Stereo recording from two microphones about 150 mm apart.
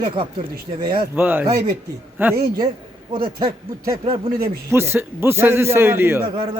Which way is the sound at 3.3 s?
25° right (ahead or behind).